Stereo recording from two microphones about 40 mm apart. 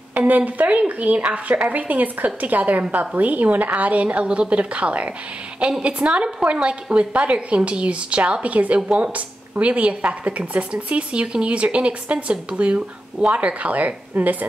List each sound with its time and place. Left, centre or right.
0.1 s a woman's voice: right